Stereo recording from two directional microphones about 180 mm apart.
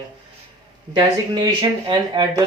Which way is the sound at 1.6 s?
25° right (ahead or behind).